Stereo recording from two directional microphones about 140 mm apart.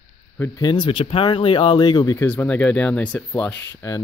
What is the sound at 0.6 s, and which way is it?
Speech, 35° left (ahead or behind).